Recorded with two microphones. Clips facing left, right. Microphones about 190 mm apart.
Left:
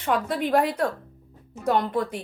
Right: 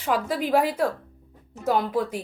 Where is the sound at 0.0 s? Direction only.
Centre (ahead or behind).